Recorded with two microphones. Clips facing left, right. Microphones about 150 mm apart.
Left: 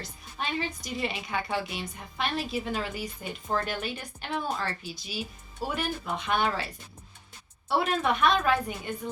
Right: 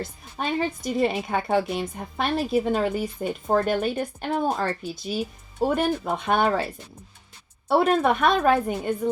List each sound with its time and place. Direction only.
0.0 s a woman's voice: 45° right (ahead or behind)
7.7 s a woman's voice: 45° right (ahead or behind)